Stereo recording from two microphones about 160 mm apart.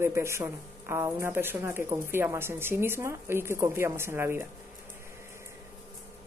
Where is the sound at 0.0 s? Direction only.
15° right (ahead or behind).